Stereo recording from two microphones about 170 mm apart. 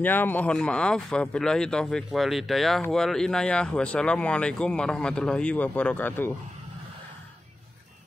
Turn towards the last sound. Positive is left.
turn(degrees=10)  # may be behind; listen again after turning